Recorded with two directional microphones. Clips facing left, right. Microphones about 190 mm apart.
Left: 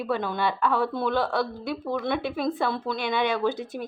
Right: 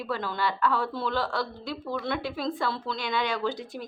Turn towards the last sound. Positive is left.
turn(degrees=20)  # may be behind; listen again after turning